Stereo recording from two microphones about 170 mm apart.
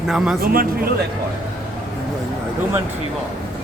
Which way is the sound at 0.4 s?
60° right (ahead or behind).